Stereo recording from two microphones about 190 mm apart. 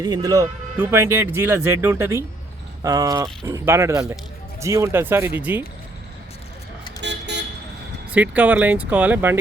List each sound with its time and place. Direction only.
0.0 s speech: 20° right (ahead or behind)
7.0 s vehicle: 65° right (ahead or behind)
8.1 s speech: 10° right (ahead or behind)